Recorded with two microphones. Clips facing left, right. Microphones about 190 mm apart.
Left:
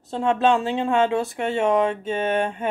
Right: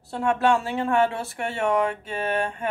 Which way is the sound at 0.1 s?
20° left (ahead or behind).